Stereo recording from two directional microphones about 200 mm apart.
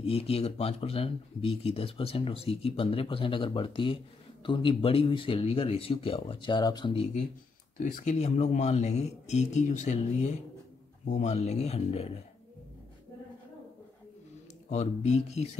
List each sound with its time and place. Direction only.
0.0 s speech: 30° left (ahead or behind)
7.8 s speech: 40° left (ahead or behind)
14.7 s speech: 35° left (ahead or behind)